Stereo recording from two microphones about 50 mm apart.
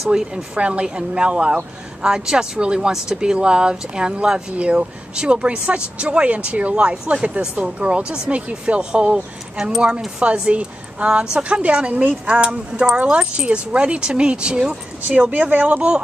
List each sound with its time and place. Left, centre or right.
0.1 s speech: centre
10.2 s speech: right
15.0 s speech: right